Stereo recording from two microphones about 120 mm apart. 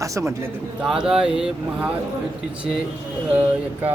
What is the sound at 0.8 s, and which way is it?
Speech, 5° right (ahead or behind).